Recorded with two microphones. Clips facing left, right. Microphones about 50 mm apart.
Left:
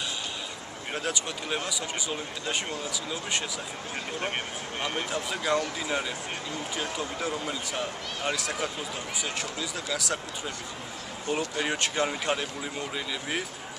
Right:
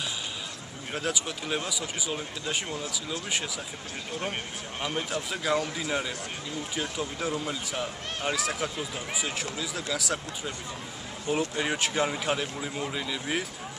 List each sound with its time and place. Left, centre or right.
0.9 s a man's voice: centre
4.2 s speech: centre
4.8 s a man's voice: centre